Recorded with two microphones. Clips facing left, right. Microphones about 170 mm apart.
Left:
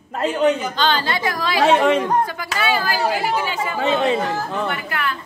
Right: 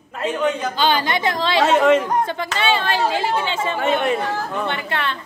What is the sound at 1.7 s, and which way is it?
Speech, 15° left (ahead or behind).